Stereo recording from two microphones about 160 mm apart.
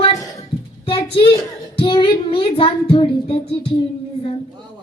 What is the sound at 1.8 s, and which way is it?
Child singing, 35° left (ahead or behind).